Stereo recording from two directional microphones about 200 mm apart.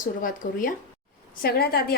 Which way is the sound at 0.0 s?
40° left (ahead or behind).